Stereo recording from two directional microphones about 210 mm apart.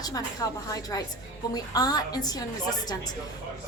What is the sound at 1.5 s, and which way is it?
Speech, 20° left (ahead or behind).